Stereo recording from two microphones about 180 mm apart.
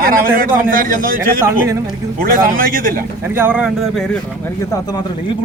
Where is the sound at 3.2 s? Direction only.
10° right (ahead or behind).